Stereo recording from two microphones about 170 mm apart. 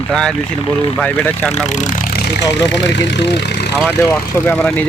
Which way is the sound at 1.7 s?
45° left (ahead or behind).